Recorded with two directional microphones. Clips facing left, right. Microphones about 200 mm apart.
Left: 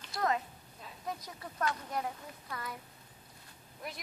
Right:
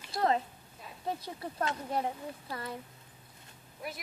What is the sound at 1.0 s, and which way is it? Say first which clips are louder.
Speech: right 5 dB; 30° right (ahead or behind).